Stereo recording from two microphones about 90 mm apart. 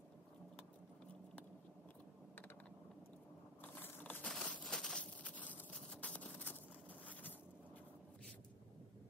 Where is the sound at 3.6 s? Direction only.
20° left (ahead or behind).